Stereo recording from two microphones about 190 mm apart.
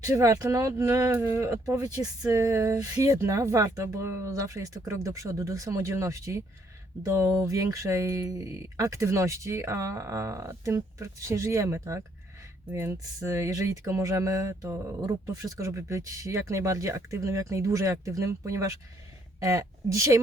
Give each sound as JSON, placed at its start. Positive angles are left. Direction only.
{"t": 0.0, "sound": "speech", "side_deg": -15}